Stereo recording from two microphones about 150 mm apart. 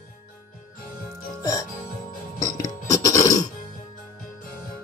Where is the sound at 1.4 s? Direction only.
25° left (ahead or behind).